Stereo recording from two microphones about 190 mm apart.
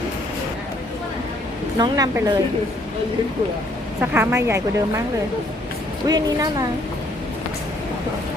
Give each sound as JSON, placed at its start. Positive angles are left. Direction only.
{"t": 1.8, "sound": "a woman's voice", "side_deg": -20}
{"t": 4.0, "sound": "speech", "side_deg": -10}
{"t": 6.1, "sound": "a woman's voice", "side_deg": -20}